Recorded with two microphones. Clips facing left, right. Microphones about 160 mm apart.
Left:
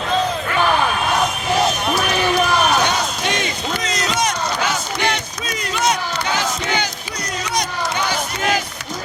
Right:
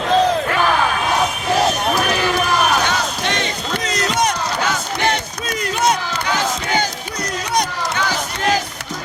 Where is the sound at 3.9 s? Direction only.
60° right (ahead or behind).